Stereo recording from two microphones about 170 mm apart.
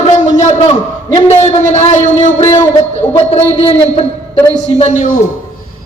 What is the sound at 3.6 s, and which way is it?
A man's voice, 35° left (ahead or behind).